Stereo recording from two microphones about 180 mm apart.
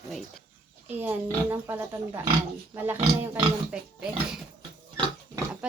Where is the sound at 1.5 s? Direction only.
15° right (ahead or behind).